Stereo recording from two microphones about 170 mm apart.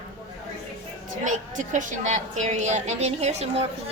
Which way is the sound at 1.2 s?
45° right (ahead or behind).